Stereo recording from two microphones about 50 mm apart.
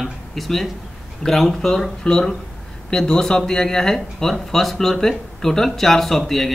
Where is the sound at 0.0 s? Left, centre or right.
Centre.